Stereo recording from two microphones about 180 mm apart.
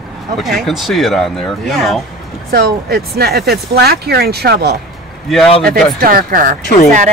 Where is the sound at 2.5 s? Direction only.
60° right (ahead or behind).